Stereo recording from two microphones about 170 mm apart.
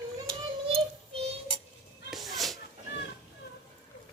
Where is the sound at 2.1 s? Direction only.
Centre (ahead or behind).